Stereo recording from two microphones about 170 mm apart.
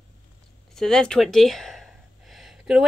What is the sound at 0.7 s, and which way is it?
Speech, 5° left (ahead or behind).